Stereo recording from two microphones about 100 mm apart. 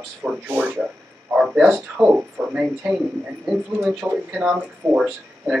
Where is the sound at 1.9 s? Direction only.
20° right (ahead or behind).